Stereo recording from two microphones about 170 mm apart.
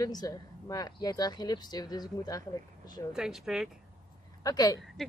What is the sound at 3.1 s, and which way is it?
Speech, 5° right (ahead or behind).